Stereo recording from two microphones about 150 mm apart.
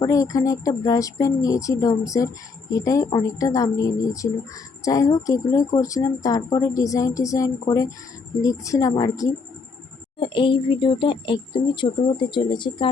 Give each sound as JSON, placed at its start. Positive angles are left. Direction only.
{"t": 0.0, "sound": "speech", "side_deg": 20}
{"t": 10.2, "sound": "speech", "side_deg": 35}